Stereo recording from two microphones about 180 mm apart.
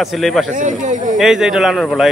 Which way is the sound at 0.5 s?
45° right (ahead or behind).